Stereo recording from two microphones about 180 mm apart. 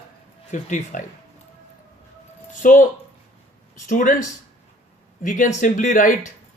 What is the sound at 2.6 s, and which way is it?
Speech, 45° left (ahead or behind).